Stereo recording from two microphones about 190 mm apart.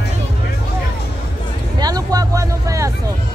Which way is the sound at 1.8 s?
20° right (ahead or behind).